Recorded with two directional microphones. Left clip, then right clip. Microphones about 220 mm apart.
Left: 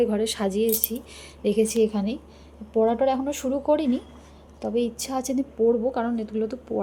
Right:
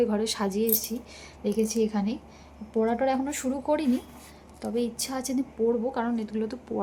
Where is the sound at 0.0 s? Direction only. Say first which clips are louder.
Left 3 dB; centre (ahead or behind).